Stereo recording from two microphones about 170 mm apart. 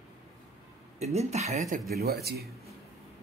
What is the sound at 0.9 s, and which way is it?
Speech, 40° right (ahead or behind).